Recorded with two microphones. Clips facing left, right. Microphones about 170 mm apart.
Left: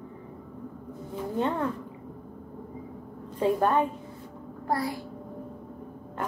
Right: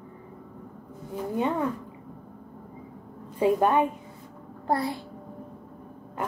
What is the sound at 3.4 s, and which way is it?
Speech, 10° right (ahead or behind).